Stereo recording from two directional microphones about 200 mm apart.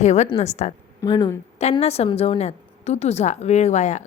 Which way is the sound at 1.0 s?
20° left (ahead or behind).